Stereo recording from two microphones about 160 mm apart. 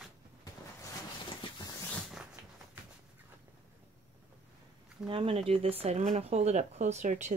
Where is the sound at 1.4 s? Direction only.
25° left (ahead or behind).